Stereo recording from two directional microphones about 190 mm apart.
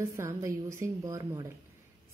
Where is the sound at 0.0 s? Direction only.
15° right (ahead or behind).